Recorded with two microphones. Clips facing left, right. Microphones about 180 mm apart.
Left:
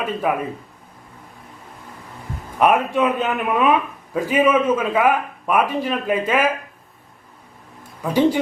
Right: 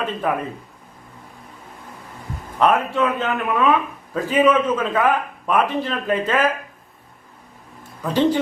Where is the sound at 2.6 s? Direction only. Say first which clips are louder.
Left 1 dB; 15° left (ahead or behind).